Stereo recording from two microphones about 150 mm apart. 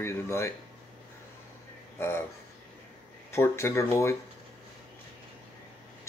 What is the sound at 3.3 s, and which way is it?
Speech, 15° left (ahead or behind).